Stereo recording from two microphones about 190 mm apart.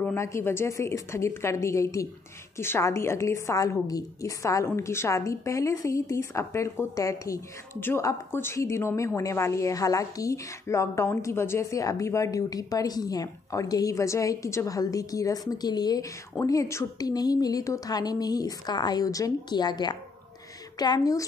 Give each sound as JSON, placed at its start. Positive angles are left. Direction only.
{"t": 0.0, "sound": "a woman's voice", "side_deg": 15}